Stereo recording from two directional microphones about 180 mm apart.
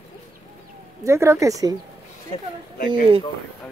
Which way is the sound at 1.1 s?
15° right (ahead or behind).